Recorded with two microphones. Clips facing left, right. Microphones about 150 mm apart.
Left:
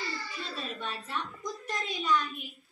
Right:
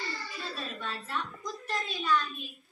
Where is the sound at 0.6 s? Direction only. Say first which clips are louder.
Left 1 dB; 20° left (ahead or behind).